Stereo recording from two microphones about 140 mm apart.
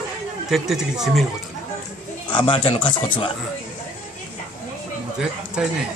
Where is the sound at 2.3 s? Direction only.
35° left (ahead or behind).